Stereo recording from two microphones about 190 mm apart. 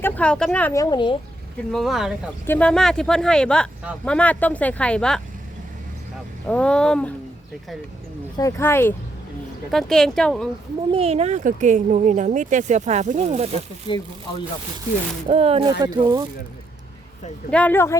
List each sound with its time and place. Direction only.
0.0 s speech: 5° left (ahead or behind); by 1.1 s 25° left (ahead or behind)
1.7 s speech: centre (ahead or behind)
6.5 s speech: 5° left (ahead or behind)
8.4 s speech: 15° left (ahead or behind)
10.9 s speech: 30° right (ahead or behind)
13.9 s speech: 25° left (ahead or behind)
15.3 s speech: 30° right (ahead or behind)
15.8 s speech: 20° right (ahead or behind)
17.5 s speech: 10° left (ahead or behind)